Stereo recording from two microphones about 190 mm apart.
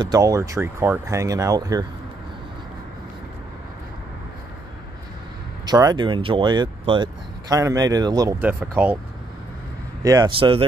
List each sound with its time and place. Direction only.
0.0 s speech: 20° right (ahead or behind)
5.7 s speech: 20° right (ahead or behind)
10.0 s speech: 20° right (ahead or behind)